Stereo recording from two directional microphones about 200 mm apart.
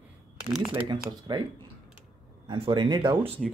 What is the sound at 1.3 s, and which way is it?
Speech, 20° right (ahead or behind).